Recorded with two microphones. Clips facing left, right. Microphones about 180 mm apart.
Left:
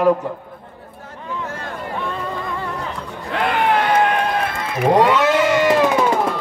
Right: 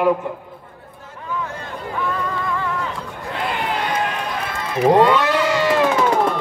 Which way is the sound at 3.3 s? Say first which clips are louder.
Left 6 dB; 65° left (ahead or behind).